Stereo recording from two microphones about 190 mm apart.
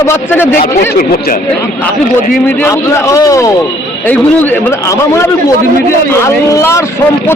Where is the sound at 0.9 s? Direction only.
55° left (ahead or behind).